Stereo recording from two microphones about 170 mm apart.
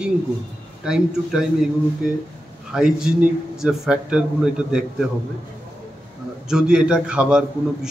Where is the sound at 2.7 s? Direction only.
5° right (ahead or behind).